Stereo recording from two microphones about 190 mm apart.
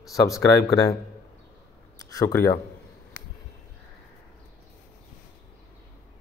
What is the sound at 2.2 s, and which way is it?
Speech, 20° left (ahead or behind).